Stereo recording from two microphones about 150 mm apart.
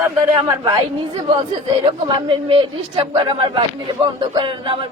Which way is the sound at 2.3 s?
40° right (ahead or behind).